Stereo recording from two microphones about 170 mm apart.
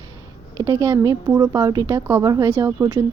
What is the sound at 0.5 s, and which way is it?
A woman's voice, 20° right (ahead or behind).